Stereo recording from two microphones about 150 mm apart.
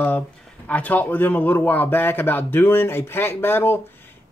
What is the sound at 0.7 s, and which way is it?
Speech, 10° left (ahead or behind).